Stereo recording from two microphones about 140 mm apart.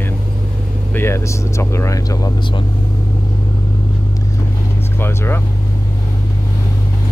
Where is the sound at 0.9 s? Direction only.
20° left (ahead or behind).